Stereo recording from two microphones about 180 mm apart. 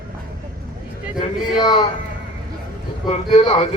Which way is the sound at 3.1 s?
35° left (ahead or behind).